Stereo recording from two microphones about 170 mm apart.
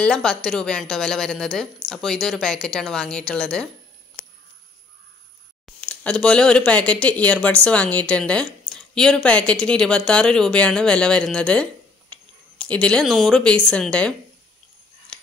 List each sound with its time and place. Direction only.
0.0 s a woman's voice: 5° left (ahead or behind)
5.8 s speech: 5° left (ahead or behind)